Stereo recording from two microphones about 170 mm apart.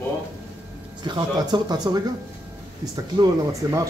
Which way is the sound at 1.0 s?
25° right (ahead or behind).